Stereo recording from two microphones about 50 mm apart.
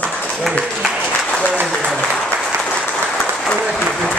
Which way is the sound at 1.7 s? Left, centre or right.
Centre.